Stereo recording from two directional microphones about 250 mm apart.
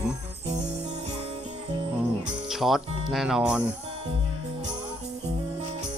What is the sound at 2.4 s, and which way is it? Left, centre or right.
Music, centre.